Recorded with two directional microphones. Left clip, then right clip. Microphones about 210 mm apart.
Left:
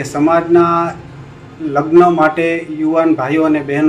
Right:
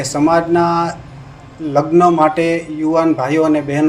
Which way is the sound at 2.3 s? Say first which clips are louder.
Even; 55° right (ahead or behind).